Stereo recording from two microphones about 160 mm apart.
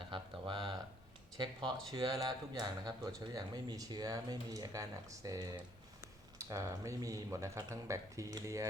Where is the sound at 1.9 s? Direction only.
25° right (ahead or behind).